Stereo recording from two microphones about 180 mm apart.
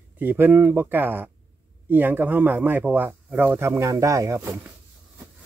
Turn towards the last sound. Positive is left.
turn(degrees=-15)  # may be behind; listen again after turning